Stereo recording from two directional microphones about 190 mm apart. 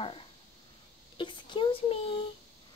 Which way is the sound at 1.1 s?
25° left (ahead or behind).